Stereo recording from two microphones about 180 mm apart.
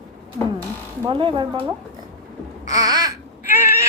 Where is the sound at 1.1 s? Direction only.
30° right (ahead or behind).